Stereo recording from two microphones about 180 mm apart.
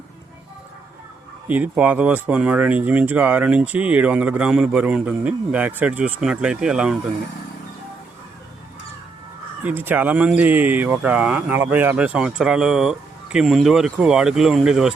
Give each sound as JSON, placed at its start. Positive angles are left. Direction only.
{"t": 1.5, "sound": "speech", "side_deg": -10}
{"t": 9.6, "sound": "speech", "side_deg": -10}